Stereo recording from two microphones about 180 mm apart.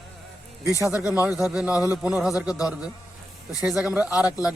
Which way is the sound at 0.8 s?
15° right (ahead or behind).